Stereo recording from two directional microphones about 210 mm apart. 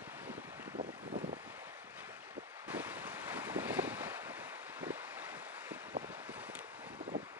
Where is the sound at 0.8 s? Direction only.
35° right (ahead or behind).